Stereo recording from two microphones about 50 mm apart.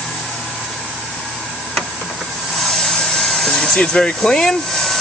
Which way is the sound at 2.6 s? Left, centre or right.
Centre.